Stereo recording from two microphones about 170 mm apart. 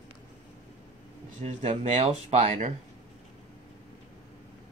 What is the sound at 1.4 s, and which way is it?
Speech, 45° right (ahead or behind).